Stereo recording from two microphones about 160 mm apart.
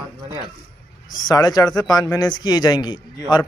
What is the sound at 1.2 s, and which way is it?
Speech, 25° left (ahead or behind).